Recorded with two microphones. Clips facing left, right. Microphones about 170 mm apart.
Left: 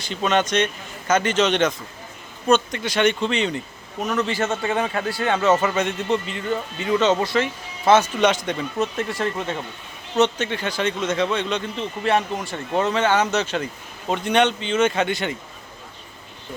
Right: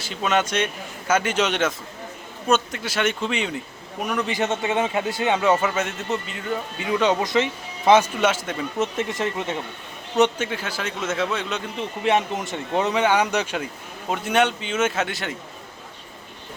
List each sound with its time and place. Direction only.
0.0 s a man's voice: 5° right (ahead or behind)
8.8 s speech: 20° right (ahead or behind)
12.0 s a man's voice: 20° right (ahead or behind); by 15.4 s centre (ahead or behind)